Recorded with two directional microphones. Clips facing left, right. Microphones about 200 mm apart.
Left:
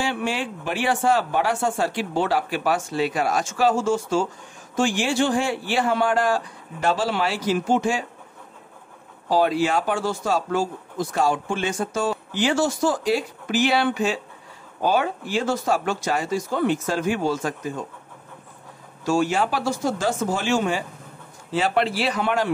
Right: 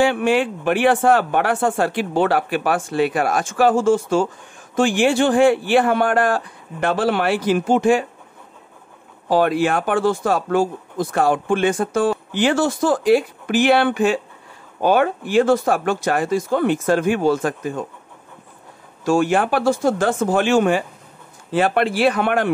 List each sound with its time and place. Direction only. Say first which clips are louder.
0.0 s speech: right 9 dB; 55° right (ahead or behind)
9.3 s speech: right 3 dB; 55° right (ahead or behind)
19.0 s speech: right 4 dB; 55° right (ahead or behind)